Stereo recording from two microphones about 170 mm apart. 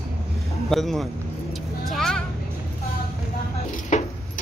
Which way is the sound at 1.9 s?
5° left (ahead or behind).